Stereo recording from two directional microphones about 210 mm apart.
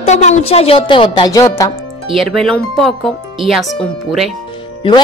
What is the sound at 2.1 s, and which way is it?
Speech, centre (ahead or behind).